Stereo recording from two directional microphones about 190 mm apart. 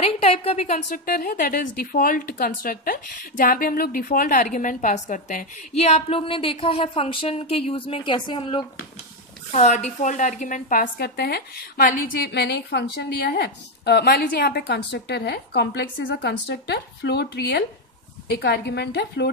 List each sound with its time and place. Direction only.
0.0 s a woman's voice: 30° left (ahead or behind)
9.5 s a woman's voice: 40° left (ahead or behind); by 19.3 s 60° left (ahead or behind)